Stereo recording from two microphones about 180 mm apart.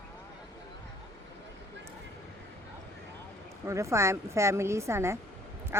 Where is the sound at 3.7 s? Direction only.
15° right (ahead or behind).